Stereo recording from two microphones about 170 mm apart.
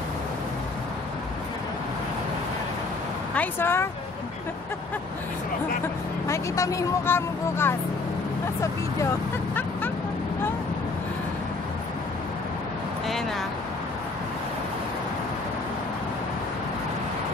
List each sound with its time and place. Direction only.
3.3 s speech: 15° left (ahead or behind)
6.2 s speech: 15° left (ahead or behind)